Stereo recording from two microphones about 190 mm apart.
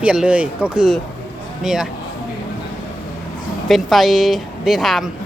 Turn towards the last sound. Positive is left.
turn(degrees=0)  # may be behind; listen again after turning